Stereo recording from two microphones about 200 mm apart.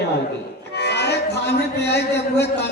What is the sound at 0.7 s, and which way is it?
Music, 55° left (ahead or behind).